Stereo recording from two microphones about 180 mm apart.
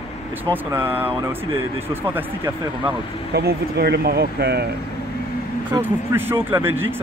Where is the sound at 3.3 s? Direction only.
65° right (ahead or behind).